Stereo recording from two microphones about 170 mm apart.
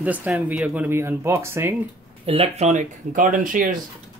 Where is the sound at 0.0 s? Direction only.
10° right (ahead or behind).